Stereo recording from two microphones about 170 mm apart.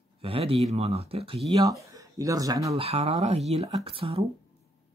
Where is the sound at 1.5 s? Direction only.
20° right (ahead or behind).